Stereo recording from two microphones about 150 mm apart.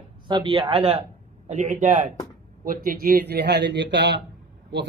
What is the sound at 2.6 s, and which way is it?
A man's voice, 75° right (ahead or behind).